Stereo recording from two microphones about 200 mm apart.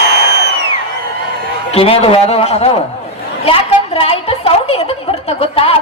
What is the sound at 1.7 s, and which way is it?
Speech, 30° left (ahead or behind).